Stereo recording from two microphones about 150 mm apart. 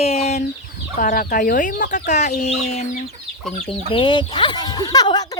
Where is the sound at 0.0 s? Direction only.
45° left (ahead or behind).